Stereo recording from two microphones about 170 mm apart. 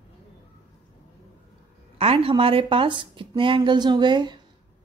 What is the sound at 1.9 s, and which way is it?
A woman's voice, 35° right (ahead or behind).